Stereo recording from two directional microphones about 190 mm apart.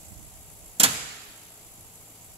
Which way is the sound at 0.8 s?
30° right (ahead or behind).